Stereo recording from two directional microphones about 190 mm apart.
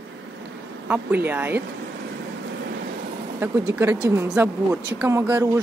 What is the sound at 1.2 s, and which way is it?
Speech, 10° right (ahead or behind).